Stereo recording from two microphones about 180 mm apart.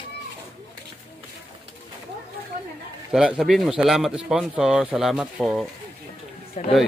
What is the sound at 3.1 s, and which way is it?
A woman's voice, 5° right (ahead or behind).